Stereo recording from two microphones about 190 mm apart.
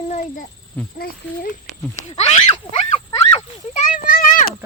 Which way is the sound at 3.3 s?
40° left (ahead or behind).